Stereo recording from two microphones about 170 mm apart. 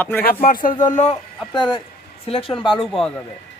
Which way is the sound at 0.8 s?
45° left (ahead or behind).